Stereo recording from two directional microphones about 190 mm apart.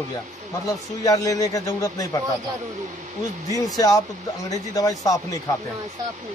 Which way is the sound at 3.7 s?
20° left (ahead or behind).